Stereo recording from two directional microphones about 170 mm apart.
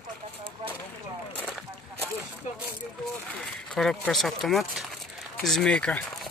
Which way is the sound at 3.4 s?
Centre (ahead or behind).